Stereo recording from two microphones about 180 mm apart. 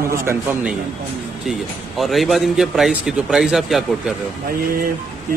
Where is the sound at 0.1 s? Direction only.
15° right (ahead or behind).